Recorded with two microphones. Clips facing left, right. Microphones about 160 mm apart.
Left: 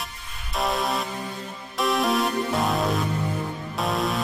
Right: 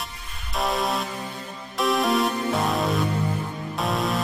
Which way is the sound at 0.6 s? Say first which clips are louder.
Even; centre (ahead or behind).